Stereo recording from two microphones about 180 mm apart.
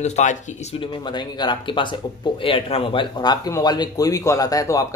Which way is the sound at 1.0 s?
25° left (ahead or behind).